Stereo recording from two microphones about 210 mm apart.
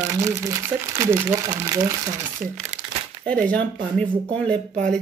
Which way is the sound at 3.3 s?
5° left (ahead or behind).